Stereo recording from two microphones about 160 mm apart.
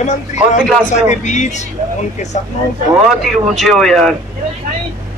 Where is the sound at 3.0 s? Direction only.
Centre (ahead or behind).